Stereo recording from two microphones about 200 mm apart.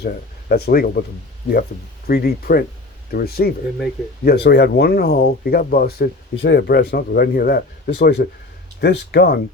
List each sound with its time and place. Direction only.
0.0 s speech: 50° left (ahead or behind)
2.0 s speech: 50° left (ahead or behind)